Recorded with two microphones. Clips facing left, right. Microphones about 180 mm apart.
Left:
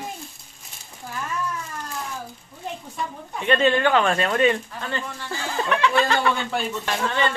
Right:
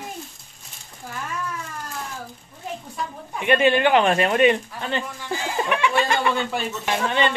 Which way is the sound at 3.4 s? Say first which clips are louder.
Right 1 dB; 10° right (ahead or behind).